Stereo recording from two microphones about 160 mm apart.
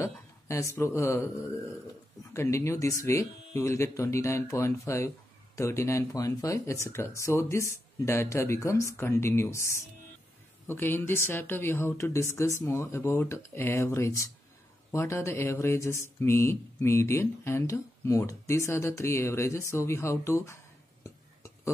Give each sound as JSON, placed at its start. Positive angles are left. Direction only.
{"t": 0.0, "sound": "speech", "side_deg": 20}
{"t": 2.3, "sound": "speech", "side_deg": 20}
{"t": 21.0, "sound": "a sound", "side_deg": 20}